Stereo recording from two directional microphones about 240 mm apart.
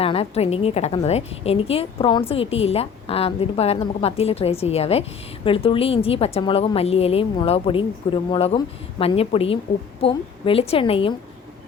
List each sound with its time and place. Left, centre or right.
0.0 s a woman's voice: left